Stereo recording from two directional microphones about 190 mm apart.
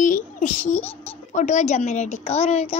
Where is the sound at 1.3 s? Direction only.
40° left (ahead or behind).